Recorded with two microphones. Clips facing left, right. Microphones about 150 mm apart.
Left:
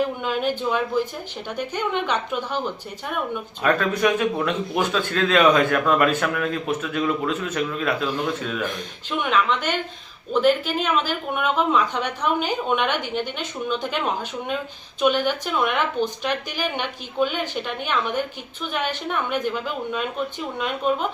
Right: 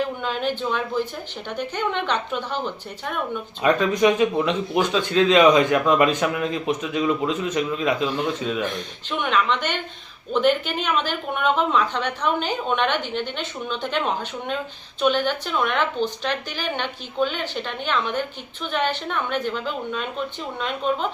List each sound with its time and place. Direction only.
0.2 s a woman's voice: 10° left (ahead or behind)
3.6 s a man's voice: 10° right (ahead or behind)
4.4 s a woman's voice: 5° left (ahead or behind)
4.9 s a man's voice: 10° right (ahead or behind)
8.6 s a woman's voice: 5° left (ahead or behind)